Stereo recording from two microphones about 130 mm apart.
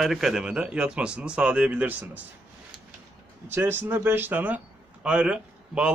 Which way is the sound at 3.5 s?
20° right (ahead or behind).